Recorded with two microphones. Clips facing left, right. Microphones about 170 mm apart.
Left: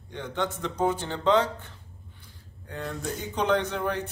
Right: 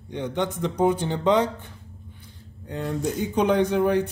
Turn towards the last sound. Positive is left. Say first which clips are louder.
# right 9 dB
turn(degrees=-15)  # may be behind; listen again after turning